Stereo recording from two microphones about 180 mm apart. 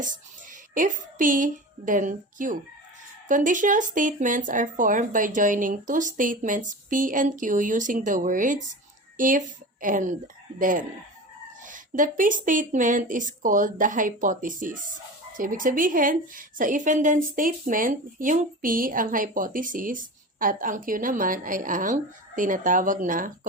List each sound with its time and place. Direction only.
0.7 s a woman's voice: 45° right (ahead or behind)